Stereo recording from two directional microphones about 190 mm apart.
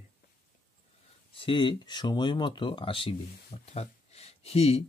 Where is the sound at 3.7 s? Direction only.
35° left (ahead or behind).